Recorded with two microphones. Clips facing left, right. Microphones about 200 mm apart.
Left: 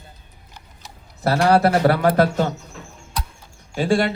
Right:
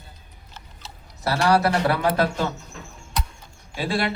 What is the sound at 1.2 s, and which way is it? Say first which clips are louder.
Speech: left 4 dB; 50° left (ahead or behind).